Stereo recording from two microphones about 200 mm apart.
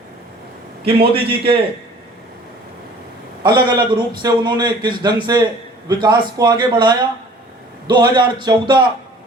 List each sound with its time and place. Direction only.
0.9 s a man's voice: 30° right (ahead or behind)
3.4 s a man's voice: 20° right (ahead or behind)